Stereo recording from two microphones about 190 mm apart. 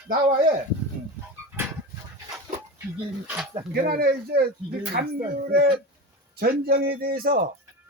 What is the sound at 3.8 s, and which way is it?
Speech, 50° right (ahead or behind).